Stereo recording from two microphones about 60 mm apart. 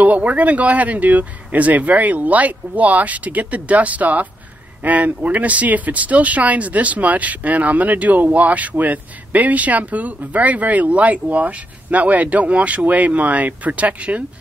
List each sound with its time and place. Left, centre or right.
0.0 s speech: right